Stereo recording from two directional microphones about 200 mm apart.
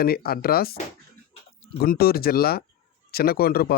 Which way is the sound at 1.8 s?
50° left (ahead or behind).